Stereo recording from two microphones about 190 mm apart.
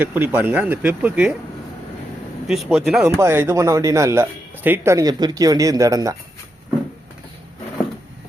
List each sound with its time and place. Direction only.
0.0 s speech: 10° right (ahead or behind)
2.5 s speech: 5° right (ahead or behind)
3.2 s speech: 15° right (ahead or behind)